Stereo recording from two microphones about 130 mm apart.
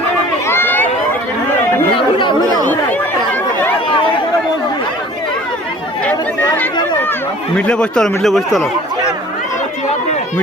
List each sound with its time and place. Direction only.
0.4 s run: 15° left (ahead or behind)
2.0 s chatter: 40° left (ahead or behind)
2.6 s chatter: 15° left (ahead or behind)
7.5 s speech: 5° left (ahead or behind)